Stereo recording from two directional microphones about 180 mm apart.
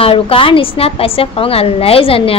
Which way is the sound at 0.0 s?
30° left (ahead or behind).